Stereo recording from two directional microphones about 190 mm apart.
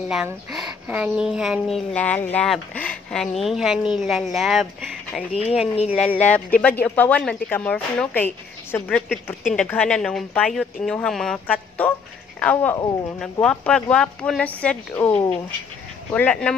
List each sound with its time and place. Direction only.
0.1 s speech: centre (ahead or behind)
5.3 s speech: 35° left (ahead or behind)
6.3 s speech: 10° left (ahead or behind)